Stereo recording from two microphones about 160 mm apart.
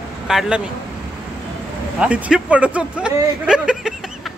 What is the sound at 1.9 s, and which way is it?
Speech, 10° right (ahead or behind).